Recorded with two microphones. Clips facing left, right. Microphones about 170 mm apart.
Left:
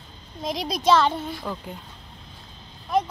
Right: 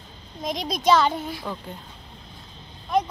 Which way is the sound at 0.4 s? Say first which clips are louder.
Even; 5° left (ahead or behind).